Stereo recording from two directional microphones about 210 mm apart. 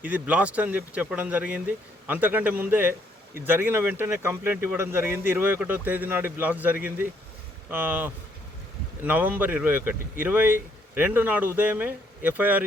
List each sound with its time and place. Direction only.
0.0 s speech: 5° right (ahead or behind)